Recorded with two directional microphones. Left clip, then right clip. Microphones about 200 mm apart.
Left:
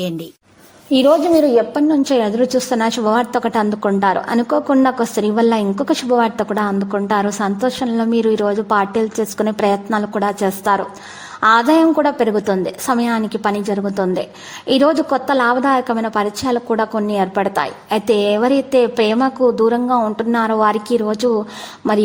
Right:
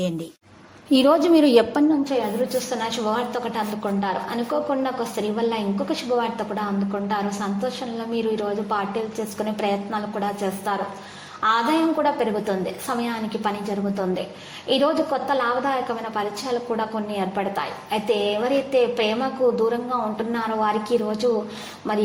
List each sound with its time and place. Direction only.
0.9 s a woman's voice: 5° left (ahead or behind)
2.0 s a woman's voice: 45° left (ahead or behind)